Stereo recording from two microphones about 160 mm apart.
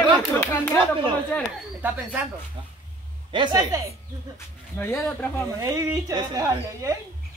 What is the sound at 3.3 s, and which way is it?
Speech, 30° right (ahead or behind).